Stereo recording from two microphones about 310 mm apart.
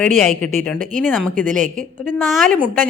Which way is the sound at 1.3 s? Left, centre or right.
Right.